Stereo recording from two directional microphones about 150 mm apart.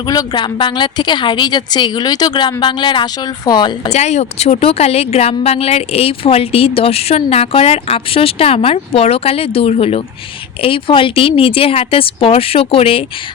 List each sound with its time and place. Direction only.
0.0 s a woman's voice: 25° left (ahead or behind)
3.8 s speech: 45° left (ahead or behind)